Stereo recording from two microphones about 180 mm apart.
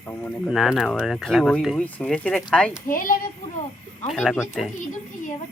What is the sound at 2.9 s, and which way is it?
Speech, 50° left (ahead or behind).